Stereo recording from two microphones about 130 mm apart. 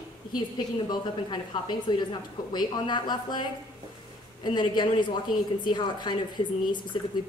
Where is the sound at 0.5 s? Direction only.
35° left (ahead or behind).